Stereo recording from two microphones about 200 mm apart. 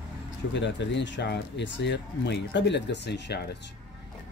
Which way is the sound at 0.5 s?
60° left (ahead or behind).